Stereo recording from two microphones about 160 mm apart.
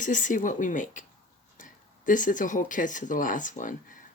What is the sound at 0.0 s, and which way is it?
Speech, 55° left (ahead or behind).